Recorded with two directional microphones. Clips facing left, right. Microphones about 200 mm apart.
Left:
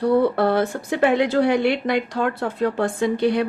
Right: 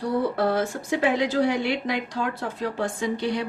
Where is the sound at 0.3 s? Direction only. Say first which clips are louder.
Left 4 dB; 60° left (ahead or behind).